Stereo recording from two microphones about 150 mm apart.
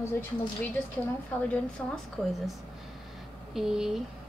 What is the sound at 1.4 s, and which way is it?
Speech, 10° left (ahead or behind).